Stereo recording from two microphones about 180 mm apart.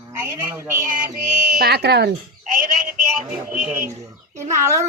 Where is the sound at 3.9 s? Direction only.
15° right (ahead or behind).